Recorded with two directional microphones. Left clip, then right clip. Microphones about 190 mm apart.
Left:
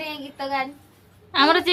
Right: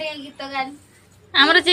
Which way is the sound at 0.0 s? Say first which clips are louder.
Right 1 dB; 30° left (ahead or behind).